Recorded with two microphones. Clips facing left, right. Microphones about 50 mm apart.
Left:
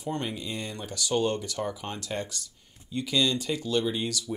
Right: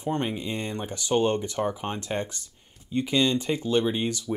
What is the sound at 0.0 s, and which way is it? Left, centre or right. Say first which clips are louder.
Speech: right 4 dB; right.